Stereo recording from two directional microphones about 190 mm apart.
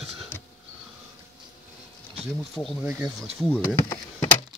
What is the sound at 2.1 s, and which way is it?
Speech, centre (ahead or behind).